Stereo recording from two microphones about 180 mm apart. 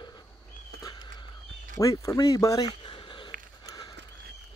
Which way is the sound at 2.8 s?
25° left (ahead or behind).